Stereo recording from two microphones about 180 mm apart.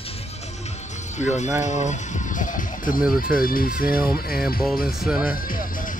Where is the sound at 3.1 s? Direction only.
55° left (ahead or behind).